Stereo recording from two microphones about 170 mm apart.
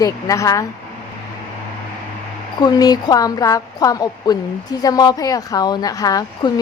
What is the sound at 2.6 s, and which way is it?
A woman's voice, 25° left (ahead or behind).